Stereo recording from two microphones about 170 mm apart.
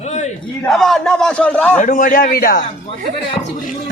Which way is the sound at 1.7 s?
50° left (ahead or behind).